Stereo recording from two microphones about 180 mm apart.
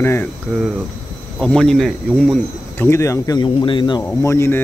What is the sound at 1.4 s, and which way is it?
Speech, 5° left (ahead or behind).